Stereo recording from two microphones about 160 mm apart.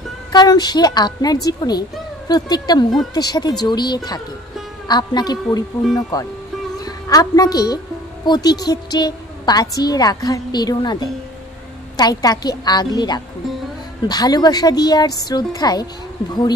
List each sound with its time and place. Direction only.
0.3 s a woman's voice: 25° left (ahead or behind)